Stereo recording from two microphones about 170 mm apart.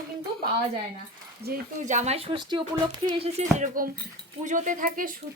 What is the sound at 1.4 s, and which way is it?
A woman's voice, 55° right (ahead or behind).